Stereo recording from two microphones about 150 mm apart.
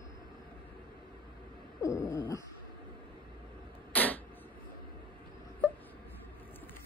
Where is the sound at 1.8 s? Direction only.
20° left (ahead or behind).